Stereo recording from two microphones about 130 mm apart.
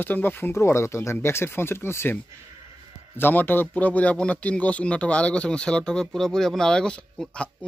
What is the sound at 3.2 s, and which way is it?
Speech, 15° left (ahead or behind).